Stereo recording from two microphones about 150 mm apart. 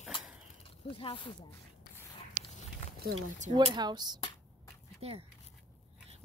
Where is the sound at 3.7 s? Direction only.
30° right (ahead or behind).